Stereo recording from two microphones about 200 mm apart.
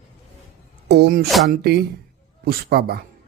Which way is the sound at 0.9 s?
55° right (ahead or behind).